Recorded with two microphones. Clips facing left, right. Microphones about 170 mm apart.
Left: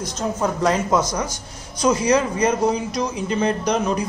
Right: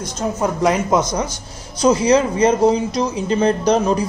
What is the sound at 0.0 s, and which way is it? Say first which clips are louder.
Speech: right 2 dB; 10° right (ahead or behind).